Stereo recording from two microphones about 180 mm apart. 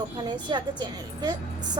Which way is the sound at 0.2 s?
25° right (ahead or behind).